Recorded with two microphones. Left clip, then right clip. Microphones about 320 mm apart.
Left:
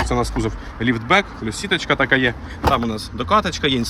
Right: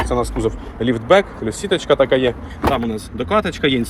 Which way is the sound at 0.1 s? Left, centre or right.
Centre.